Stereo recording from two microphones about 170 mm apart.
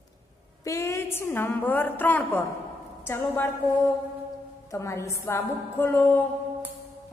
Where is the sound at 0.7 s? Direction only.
20° left (ahead or behind).